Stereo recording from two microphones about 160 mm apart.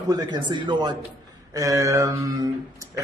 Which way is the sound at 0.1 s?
30° right (ahead or behind).